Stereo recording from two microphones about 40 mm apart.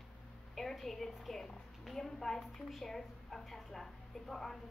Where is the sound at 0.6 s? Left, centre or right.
Centre.